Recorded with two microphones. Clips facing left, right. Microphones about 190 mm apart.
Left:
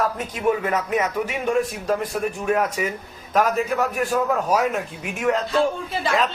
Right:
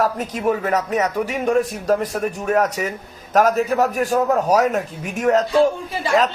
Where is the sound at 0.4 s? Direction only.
40° right (ahead or behind).